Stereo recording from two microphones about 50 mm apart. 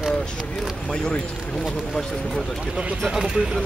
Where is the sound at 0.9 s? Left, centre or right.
Centre.